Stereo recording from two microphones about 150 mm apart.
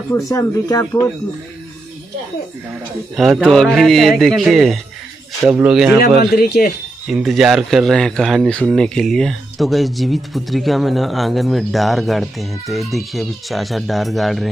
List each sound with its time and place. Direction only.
0.1 s speech: 20° left (ahead or behind)
3.2 s speech: centre (ahead or behind)
6.3 s speech: 90° left
7.1 s speech: centre (ahead or behind)